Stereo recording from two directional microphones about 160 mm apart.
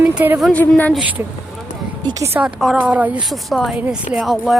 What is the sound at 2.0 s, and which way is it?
Speech, 25° right (ahead or behind).